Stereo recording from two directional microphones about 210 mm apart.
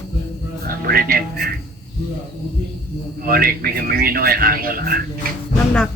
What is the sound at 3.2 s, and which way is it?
A man's voice, 45° right (ahead or behind).